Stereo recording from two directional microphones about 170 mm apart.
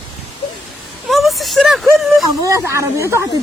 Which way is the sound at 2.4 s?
15° right (ahead or behind).